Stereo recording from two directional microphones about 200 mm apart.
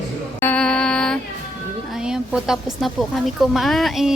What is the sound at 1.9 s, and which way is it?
A woman's voice, 5° right (ahead or behind).